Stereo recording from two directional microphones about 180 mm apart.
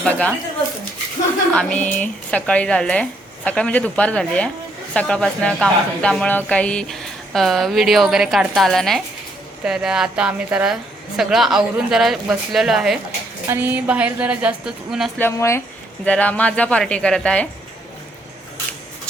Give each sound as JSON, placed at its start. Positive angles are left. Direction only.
{"t": 0.0, "sound": "speech", "side_deg": 10}
{"t": 1.5, "sound": "a woman's voice", "side_deg": 10}
{"t": 15.2, "sound": "speech", "side_deg": 15}